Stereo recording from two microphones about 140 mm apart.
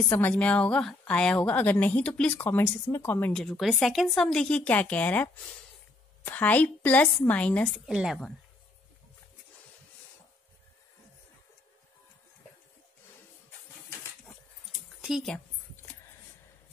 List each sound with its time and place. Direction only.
0.1 s a woman's voice: 10° left (ahead or behind)
3.3 s a woman's voice: centre (ahead or behind)
15.0 s speech: centre (ahead or behind)